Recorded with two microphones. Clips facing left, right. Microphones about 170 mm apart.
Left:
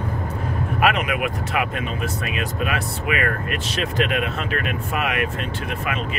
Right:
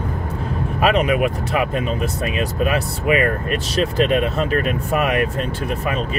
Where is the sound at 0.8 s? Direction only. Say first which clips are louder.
Right 5 dB; 30° right (ahead or behind).